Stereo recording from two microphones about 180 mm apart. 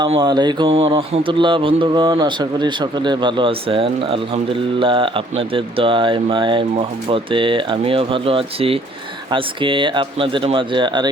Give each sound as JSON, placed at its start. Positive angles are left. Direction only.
{"t": 0.0, "sound": "mantra", "side_deg": -25}